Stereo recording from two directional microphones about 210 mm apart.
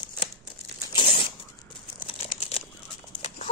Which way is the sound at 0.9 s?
25° left (ahead or behind).